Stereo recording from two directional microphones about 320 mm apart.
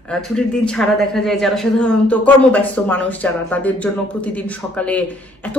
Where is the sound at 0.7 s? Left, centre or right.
Centre.